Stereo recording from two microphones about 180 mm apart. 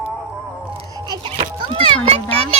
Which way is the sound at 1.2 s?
25° right (ahead or behind).